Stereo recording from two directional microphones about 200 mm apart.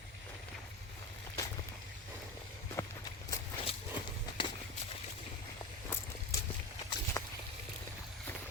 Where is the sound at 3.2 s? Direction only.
25° left (ahead or behind).